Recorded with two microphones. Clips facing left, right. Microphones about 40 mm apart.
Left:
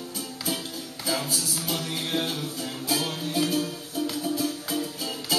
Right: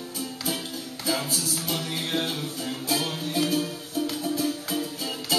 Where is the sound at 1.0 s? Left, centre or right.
Centre.